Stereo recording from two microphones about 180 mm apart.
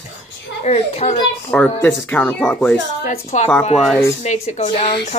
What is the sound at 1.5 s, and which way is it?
Speech, 5° left (ahead or behind).